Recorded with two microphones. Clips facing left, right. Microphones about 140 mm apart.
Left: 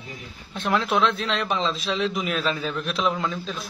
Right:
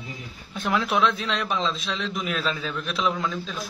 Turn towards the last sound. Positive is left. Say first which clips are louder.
# left 1 dB
turn(degrees=0)  # may be behind; listen again after turning